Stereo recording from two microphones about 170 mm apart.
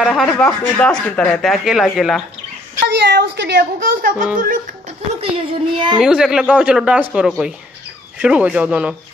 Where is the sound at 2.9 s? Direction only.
85° right; by 4.9 s 55° right (ahead or behind).